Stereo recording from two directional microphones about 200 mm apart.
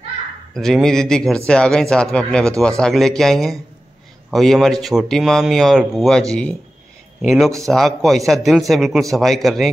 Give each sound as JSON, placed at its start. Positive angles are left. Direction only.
{"t": 0.6, "sound": "speech", "side_deg": 0}